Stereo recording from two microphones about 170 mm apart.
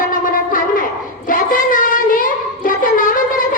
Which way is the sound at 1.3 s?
55° left (ahead or behind).